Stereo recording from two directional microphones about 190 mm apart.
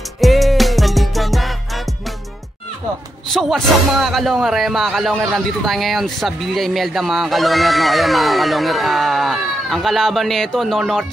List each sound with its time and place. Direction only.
0.2 s music: centre (ahead or behind)
3.3 s speech: centre (ahead or behind)